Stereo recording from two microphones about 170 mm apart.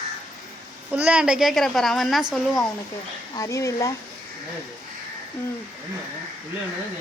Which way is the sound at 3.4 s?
20° left (ahead or behind).